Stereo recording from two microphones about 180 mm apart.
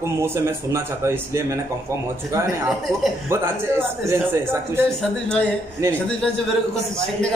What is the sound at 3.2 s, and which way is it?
Speech, 15° right (ahead or behind).